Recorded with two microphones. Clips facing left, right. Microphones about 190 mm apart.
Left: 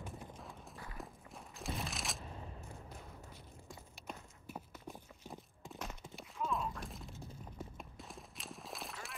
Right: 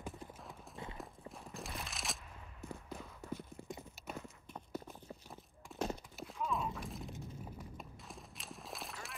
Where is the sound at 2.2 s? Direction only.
35° left (ahead or behind).